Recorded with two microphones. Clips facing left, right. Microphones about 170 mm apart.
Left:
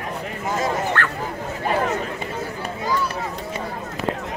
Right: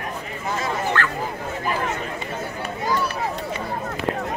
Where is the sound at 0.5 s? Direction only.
55° left (ahead or behind).